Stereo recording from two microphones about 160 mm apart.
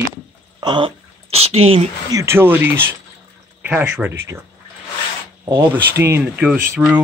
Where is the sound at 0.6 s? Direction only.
30° right (ahead or behind).